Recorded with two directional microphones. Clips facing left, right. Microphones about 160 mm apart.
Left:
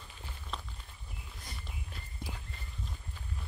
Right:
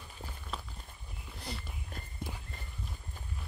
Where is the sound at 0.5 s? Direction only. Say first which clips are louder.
Even; 5° right (ahead or behind).